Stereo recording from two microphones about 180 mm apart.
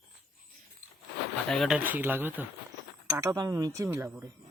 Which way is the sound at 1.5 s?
Centre (ahead or behind).